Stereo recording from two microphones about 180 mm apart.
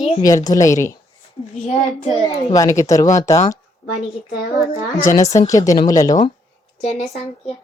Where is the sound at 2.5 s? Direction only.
20° left (ahead or behind).